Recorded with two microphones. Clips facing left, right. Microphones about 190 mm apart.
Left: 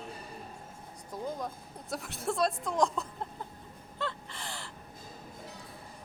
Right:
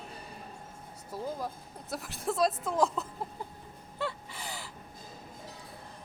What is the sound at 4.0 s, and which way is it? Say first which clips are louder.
Gasp: right 1 dB; 10° right (ahead or behind).